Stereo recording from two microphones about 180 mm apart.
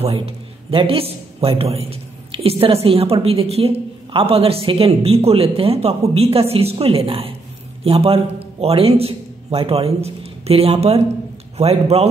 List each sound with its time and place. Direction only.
0.7 s a man's voice: 30° right (ahead or behind)